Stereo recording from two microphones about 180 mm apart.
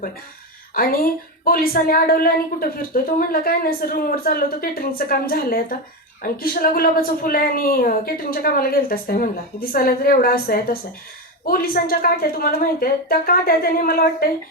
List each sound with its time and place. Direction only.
0.7 s a woman's voice: 50° left (ahead or behind)